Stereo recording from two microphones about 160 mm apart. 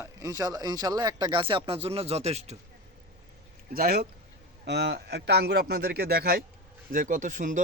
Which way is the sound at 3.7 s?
70° right (ahead or behind).